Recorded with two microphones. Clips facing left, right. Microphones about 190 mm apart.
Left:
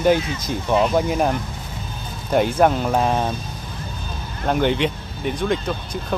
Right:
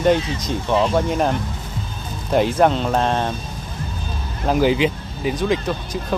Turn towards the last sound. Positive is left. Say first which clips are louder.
# right 2 dB
turn(degrees=0)  # may be behind; listen again after turning